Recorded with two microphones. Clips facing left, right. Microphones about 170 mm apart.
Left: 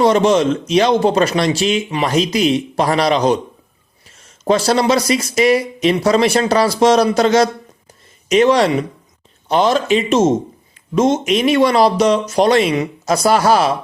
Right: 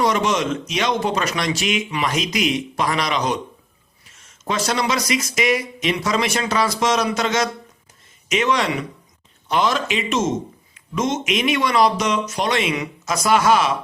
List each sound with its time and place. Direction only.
0.0 s speech: 30° left (ahead or behind)
4.4 s speech: 35° left (ahead or behind)